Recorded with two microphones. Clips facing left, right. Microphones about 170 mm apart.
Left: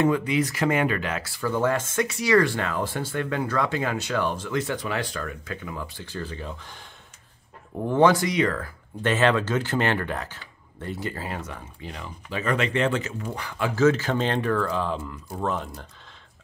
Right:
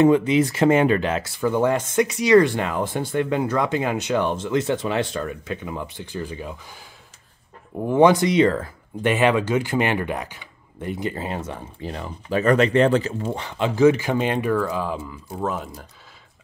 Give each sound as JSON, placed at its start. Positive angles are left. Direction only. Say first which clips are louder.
{"t": 0.0, "sound": "speech", "louder": "right 6 dB", "side_deg": -25}
{"t": 7.8, "sound": "speech", "louder": "right 4 dB", "side_deg": -15}
{"t": 11.8, "sound": "speech", "louder": "right 6 dB", "side_deg": -45}